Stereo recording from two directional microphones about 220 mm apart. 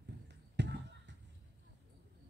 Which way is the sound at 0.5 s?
50° right (ahead or behind).